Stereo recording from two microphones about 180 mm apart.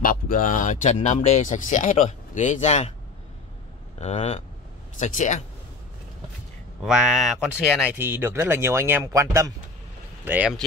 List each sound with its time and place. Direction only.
0.0 s speech: 50° left (ahead or behind)
4.0 s speech: 35° left (ahead or behind)
6.8 s speech: centre (ahead or behind)
8.0 s speech: 10° right (ahead or behind)